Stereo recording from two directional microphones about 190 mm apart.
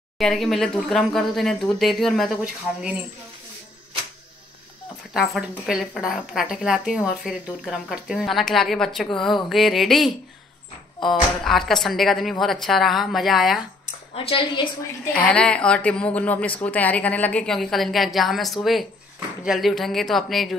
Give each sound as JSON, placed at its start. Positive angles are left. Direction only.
{"t": 0.2, "sound": "speech", "side_deg": 0}
{"t": 5.1, "sound": "speech", "side_deg": 0}
{"t": 14.1, "sound": "a woman's voice", "side_deg": 25}
{"t": 15.1, "sound": "speech", "side_deg": 5}